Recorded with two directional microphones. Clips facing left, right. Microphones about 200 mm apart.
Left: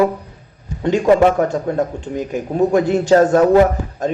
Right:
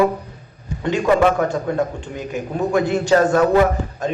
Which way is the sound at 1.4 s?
40° left (ahead or behind).